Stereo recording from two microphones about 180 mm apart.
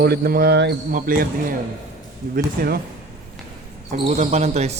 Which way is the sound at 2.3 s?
60° right (ahead or behind).